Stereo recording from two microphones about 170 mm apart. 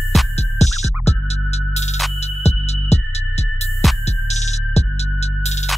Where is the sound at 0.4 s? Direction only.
40° left (ahead or behind).